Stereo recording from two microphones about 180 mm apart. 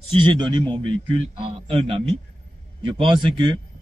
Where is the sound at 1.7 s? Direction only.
30° right (ahead or behind).